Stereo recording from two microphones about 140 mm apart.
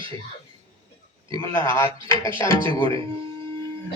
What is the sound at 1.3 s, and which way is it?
A man's voice, 25° left (ahead or behind).